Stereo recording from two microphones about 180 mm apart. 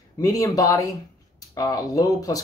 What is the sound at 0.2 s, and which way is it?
Speech, 20° left (ahead or behind).